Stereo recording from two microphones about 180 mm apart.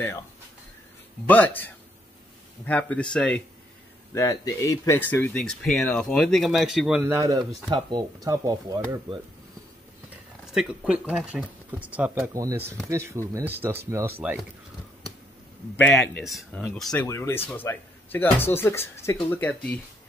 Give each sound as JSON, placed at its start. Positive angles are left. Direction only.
{"t": 1.2, "sound": "speech", "side_deg": 10}
{"t": 4.1, "sound": "speech", "side_deg": 15}
{"t": 7.0, "sound": "speech", "side_deg": -15}
{"t": 10.5, "sound": "speech", "side_deg": -5}
{"t": 15.9, "sound": "speech", "side_deg": 0}
{"t": 17.0, "sound": "speech", "side_deg": 15}